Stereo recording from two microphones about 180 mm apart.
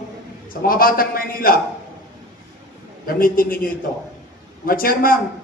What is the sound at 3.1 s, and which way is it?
A man's voice, 50° left (ahead or behind).